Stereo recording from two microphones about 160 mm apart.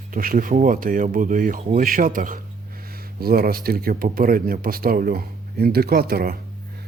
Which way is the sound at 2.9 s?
70° right (ahead or behind).